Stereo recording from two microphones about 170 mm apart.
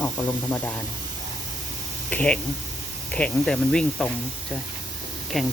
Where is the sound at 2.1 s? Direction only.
10° left (ahead or behind).